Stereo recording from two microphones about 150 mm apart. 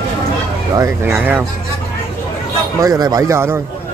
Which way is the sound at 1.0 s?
10° right (ahead or behind).